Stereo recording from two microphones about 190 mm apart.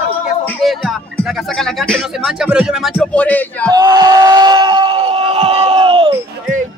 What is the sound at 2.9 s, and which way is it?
Speech, 10° left (ahead or behind).